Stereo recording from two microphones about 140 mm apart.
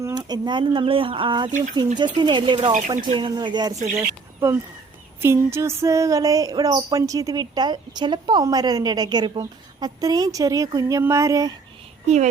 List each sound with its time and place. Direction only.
0.0 s speech: 30° right (ahead or behind)
3.9 s speech: 20° right (ahead or behind)
5.2 s a sound: 20° right (ahead or behind)
12.0 s speech: 55° right (ahead or behind)